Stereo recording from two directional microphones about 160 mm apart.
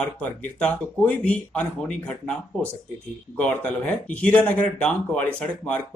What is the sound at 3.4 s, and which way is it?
Speech, 5° left (ahead or behind).